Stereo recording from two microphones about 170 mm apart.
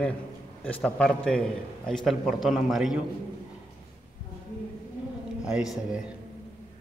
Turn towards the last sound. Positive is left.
turn(degrees=-5)  # may be behind; listen again after turning